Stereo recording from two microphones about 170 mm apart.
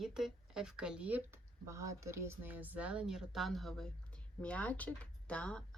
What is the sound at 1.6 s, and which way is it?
Speech, 20° right (ahead or behind).